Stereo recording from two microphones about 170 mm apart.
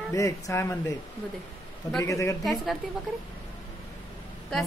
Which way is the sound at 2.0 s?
20° left (ahead or behind).